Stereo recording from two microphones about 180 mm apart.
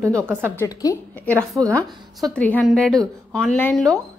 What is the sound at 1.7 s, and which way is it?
Speech, 10° left (ahead or behind).